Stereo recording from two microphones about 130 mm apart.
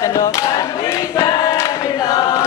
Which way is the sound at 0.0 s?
25° left (ahead or behind).